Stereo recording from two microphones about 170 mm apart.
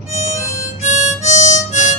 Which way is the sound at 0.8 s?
45° left (ahead or behind).